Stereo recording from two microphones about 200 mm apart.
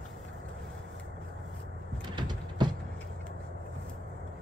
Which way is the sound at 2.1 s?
20° right (ahead or behind).